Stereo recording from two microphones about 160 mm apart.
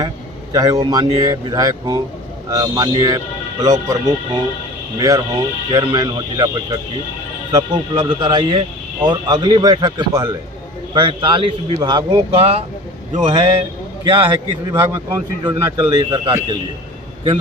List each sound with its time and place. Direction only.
0.5 s speech: 25° right (ahead or behind)
4.9 s speech: 25° right (ahead or behind)
14.8 s speech: 15° right (ahead or behind)
15.4 s speech: 35° right (ahead or behind)